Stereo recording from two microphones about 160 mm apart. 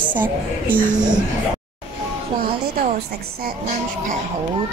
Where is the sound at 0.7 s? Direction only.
10° right (ahead or behind).